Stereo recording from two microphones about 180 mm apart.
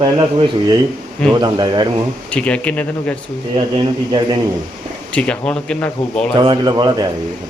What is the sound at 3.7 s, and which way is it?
Speech, 25° right (ahead or behind).